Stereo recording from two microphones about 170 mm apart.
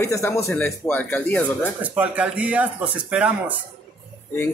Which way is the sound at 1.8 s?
10° right (ahead or behind).